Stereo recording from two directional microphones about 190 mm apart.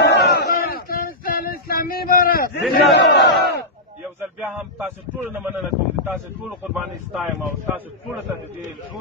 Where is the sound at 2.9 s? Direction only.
60° left (ahead or behind).